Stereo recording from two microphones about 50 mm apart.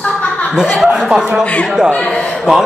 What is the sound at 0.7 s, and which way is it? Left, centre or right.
Speech, centre.